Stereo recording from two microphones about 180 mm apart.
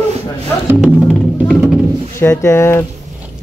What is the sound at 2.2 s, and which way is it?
Speech, 15° left (ahead or behind).